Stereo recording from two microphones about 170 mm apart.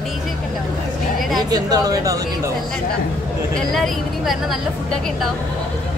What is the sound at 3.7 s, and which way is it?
Speech, centre (ahead or behind).